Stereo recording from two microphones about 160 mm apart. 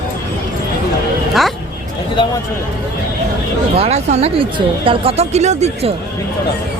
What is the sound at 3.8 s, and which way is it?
Speech, 40° right (ahead or behind).